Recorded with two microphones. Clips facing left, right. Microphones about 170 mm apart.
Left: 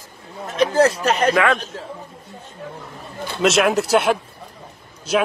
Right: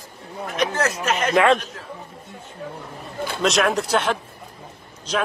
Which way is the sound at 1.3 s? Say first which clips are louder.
Right 2 dB; 30° right (ahead or behind).